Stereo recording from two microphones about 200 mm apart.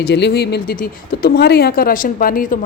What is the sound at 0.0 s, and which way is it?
Speech, 55° left (ahead or behind).